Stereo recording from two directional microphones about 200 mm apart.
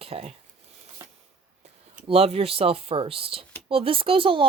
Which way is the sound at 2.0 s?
30° right (ahead or behind).